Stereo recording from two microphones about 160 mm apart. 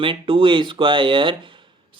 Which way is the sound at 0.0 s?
35° right (ahead or behind).